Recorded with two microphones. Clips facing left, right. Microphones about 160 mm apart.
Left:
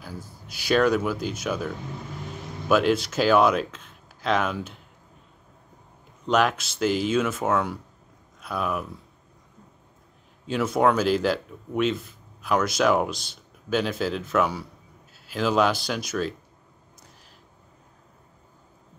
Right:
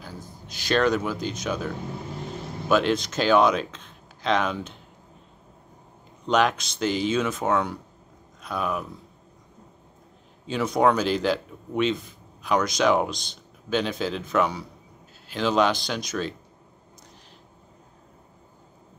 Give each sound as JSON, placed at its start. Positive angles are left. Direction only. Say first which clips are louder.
{"t": 0.0, "sound": "speech", "louder": "left 1 dB", "side_deg": 10}
{"t": 6.2, "sound": "speech", "louder": "even", "side_deg": 5}
{"t": 10.4, "sound": "speech", "louder": "even", "side_deg": 5}